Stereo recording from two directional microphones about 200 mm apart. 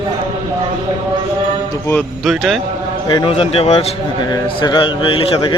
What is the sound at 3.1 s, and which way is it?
Speech, 25° left (ahead or behind).